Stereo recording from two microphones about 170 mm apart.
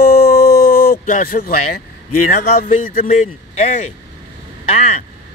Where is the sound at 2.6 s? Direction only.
55° left (ahead or behind).